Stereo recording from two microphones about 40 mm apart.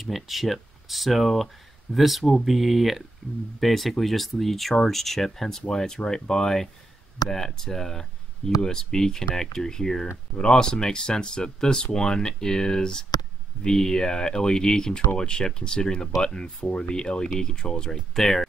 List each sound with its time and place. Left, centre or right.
0.0 s speech: centre
3.5 s speech: centre
18.1 s speech: centre